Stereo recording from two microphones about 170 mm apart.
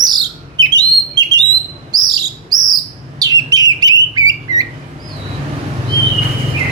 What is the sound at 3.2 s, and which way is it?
Bird, 20° right (ahead or behind).